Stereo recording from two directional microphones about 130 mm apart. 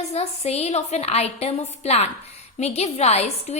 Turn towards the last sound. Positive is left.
turn(degrees=55)  # may be behind; listen again after turning